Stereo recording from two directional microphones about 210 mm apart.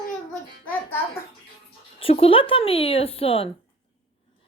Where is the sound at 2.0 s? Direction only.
25° left (ahead or behind).